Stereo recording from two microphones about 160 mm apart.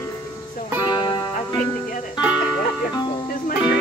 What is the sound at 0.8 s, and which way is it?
Music, 25° left (ahead or behind).